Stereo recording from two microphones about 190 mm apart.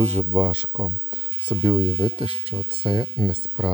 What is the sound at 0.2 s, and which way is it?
Speech, 15° right (ahead or behind).